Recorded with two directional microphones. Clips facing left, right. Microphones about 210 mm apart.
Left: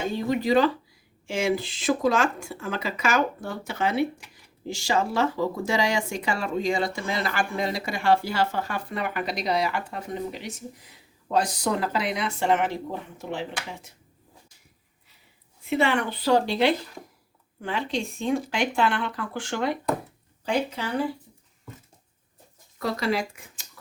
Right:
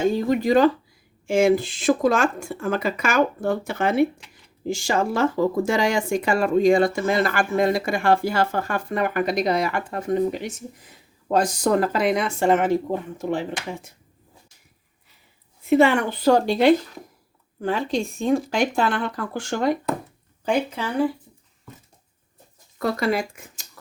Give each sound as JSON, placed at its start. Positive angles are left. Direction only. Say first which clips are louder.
{"t": 0.3, "sound": "speech", "louder": "right 2 dB", "side_deg": -45}
{"t": 15.7, "sound": "speech", "louder": "right 7 dB", "side_deg": -45}
{"t": 22.8, "sound": "speech", "louder": "right 4 dB", "side_deg": -50}